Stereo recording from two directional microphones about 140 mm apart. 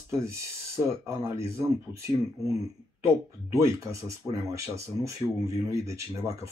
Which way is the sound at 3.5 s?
20° right (ahead or behind).